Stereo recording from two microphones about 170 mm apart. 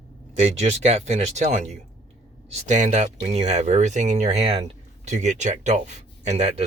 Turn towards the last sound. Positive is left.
turn(degrees=-40)  # may be behind; listen again after turning